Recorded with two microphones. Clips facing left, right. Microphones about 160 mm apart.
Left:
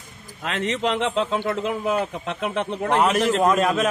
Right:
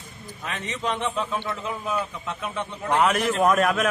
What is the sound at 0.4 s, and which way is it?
A man's voice, 90° left.